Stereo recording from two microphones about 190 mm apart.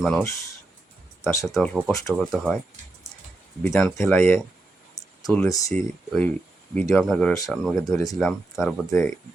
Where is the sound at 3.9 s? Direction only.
15° left (ahead or behind).